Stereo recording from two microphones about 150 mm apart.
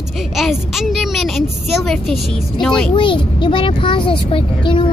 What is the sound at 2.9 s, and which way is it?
Speech, 35° left (ahead or behind).